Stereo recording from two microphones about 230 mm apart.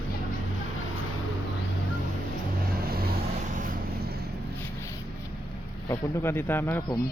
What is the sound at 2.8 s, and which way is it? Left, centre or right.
Vehicle, right.